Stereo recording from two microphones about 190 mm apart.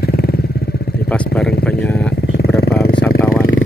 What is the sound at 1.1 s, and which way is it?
Vehicle, 5° left (ahead or behind).